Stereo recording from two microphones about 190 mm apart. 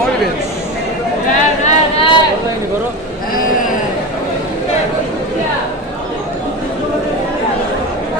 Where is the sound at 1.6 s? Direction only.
30° left (ahead or behind).